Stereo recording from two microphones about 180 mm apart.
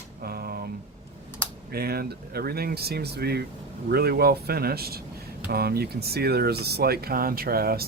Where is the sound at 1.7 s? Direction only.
60° right (ahead or behind).